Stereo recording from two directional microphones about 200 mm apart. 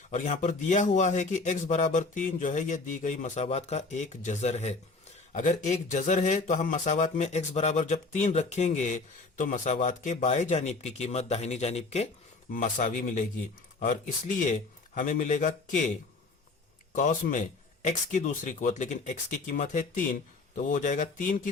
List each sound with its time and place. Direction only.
0.1 s speech: 35° left (ahead or behind)
16.9 s speech: 40° left (ahead or behind)